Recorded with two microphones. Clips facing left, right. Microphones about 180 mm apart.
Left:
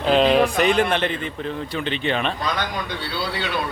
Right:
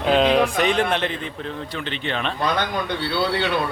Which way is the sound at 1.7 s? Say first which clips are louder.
Left 5 dB; 15° left (ahead or behind).